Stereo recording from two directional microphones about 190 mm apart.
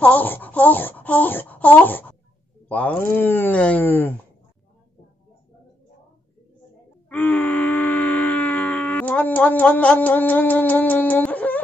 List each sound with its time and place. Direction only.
0.0 s speech: 10° left (ahead or behind)
7.1 s groan: 10° left (ahead or behind)